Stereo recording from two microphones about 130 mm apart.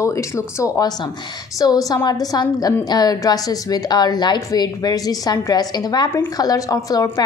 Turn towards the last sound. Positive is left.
turn(degrees=30)  # may be behind; listen again after turning